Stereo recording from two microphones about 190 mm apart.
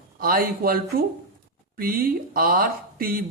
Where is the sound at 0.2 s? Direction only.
50° right (ahead or behind).